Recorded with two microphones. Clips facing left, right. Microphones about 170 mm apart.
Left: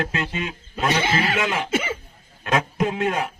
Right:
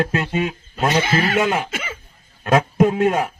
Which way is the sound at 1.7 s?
30° left (ahead or behind).